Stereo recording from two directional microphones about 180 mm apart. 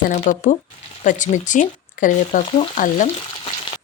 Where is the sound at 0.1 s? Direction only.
45° left (ahead or behind).